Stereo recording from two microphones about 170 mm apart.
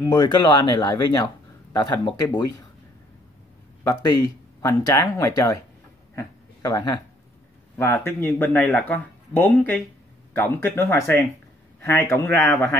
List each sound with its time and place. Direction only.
0.0 s speech: 25° left (ahead or behind)
3.8 s speech: 20° left (ahead or behind)
6.1 s a sound: 20° left (ahead or behind)
7.7 s speech: 10° left (ahead or behind)